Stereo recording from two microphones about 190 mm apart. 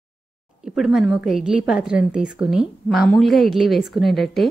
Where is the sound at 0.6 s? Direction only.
Centre (ahead or behind).